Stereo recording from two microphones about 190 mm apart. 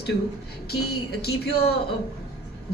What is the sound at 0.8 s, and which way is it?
Speech, 55° left (ahead or behind).